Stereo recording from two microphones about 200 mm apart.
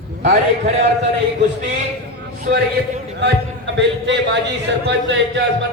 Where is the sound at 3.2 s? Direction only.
60° right (ahead or behind).